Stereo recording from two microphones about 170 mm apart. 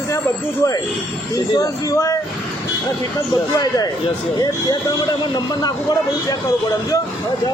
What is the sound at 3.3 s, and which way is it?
Speech, 25° left (ahead or behind).